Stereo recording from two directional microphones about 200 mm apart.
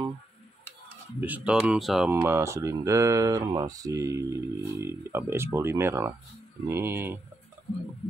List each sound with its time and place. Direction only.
1.2 s speech: 5° right (ahead or behind)
2.2 s speech: 15° right (ahead or behind)